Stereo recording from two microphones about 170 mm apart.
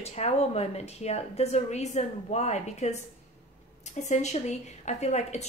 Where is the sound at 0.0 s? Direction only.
40° left (ahead or behind).